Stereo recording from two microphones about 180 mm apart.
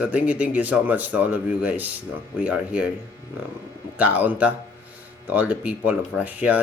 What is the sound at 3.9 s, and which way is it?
Speech, 10° right (ahead or behind).